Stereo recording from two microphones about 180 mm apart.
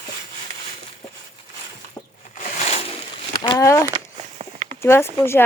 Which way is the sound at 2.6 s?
30° left (ahead or behind).